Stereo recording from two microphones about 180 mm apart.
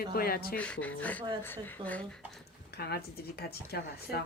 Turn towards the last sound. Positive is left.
turn(degrees=60)  # may be behind; listen again after turning